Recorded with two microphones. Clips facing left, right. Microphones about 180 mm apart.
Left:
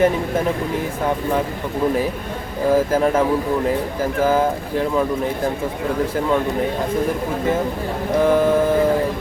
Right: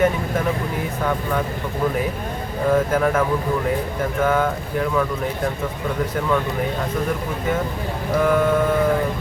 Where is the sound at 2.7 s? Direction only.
30° left (ahead or behind).